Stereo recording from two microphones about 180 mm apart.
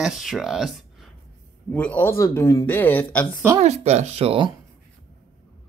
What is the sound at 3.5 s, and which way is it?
Speech, 40° right (ahead or behind).